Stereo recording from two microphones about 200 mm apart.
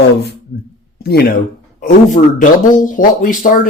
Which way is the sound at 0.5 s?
65° left (ahead or behind).